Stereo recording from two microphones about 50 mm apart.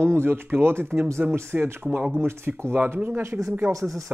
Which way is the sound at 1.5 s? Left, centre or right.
Right.